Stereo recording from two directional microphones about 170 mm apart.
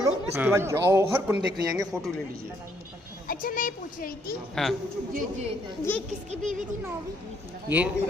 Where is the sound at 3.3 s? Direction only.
55° left (ahead or behind).